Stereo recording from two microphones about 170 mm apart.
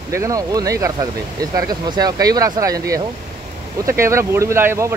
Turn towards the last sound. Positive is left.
turn(degrees=-15)  # may be behind; listen again after turning